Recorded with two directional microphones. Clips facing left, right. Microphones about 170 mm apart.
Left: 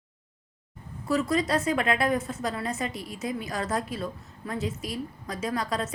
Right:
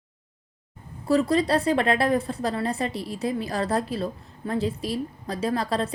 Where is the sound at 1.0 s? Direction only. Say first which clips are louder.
Right 4 dB; 30° right (ahead or behind).